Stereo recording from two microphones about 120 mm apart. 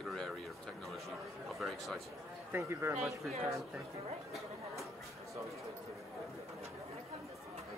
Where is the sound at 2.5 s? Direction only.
20° right (ahead or behind).